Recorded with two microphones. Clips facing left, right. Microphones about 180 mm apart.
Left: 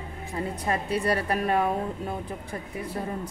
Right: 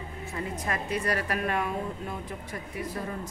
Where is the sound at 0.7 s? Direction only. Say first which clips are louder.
Left 4 dB; 30° left (ahead or behind).